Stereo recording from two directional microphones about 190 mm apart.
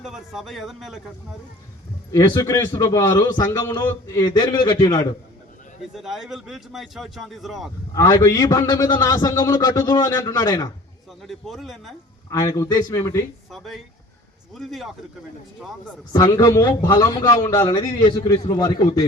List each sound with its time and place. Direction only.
0.0 s a man's voice: centre (ahead or behind)
2.1 s a man's voice: 20° left (ahead or behind)
5.9 s a man's voice: centre (ahead or behind)
7.9 s a man's voice: 20° left (ahead or behind)
11.2 s a man's voice: centre (ahead or behind)
12.3 s speech: 15° left (ahead or behind)
13.5 s a man's voice: centre (ahead or behind)
15.8 s a man's voice: 20° left (ahead or behind)